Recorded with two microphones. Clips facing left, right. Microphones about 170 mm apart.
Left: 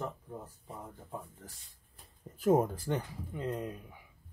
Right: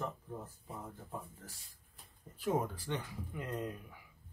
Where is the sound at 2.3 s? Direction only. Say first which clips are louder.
Left 8 dB; 45° left (ahead or behind).